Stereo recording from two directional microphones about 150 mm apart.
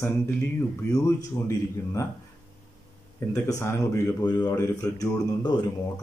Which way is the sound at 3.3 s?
15° left (ahead or behind).